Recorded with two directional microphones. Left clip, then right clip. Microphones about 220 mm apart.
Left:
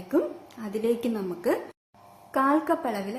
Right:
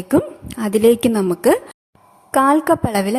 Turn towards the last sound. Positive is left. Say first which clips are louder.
# right 9 dB
turn(degrees=-45)  # may be behind; listen again after turning